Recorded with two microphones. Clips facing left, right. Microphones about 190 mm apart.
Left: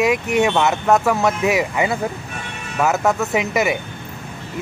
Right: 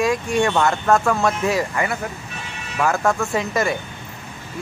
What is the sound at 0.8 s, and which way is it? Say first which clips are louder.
Speech: left 2 dB; 5° left (ahead or behind).